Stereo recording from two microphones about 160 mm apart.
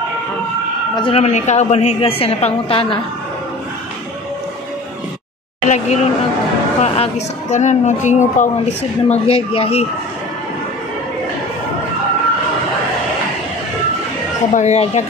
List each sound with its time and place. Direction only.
0.9 s a woman's voice: 35° left (ahead or behind)
5.7 s a woman's voice: 45° left (ahead or behind)
9.1 s a woman's voice: 35° left (ahead or behind)
14.5 s a woman's voice: 45° left (ahead or behind)